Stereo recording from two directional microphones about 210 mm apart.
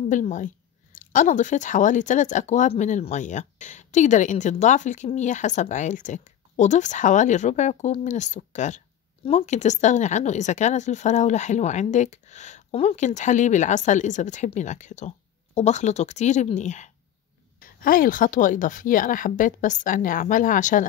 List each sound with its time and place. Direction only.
0.1 s speech: 35° left (ahead or behind)